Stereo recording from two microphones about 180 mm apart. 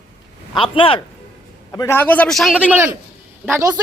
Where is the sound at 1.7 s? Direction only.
15° left (ahead or behind).